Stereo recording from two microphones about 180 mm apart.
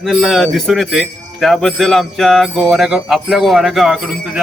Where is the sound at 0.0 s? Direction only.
Centre (ahead or behind).